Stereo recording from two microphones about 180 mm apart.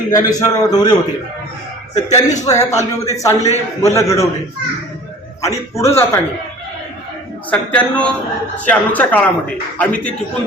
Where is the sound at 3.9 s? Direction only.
15° left (ahead or behind).